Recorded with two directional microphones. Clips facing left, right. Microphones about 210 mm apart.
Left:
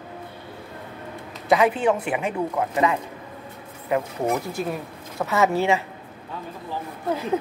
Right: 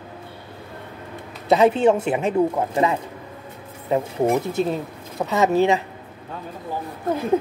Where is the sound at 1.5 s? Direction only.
25° right (ahead or behind).